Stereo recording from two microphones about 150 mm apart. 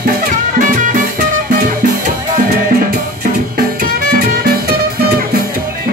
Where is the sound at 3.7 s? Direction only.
70° right (ahead or behind).